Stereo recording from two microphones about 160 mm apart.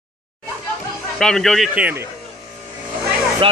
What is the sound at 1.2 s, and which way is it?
Speech, 5° left (ahead or behind).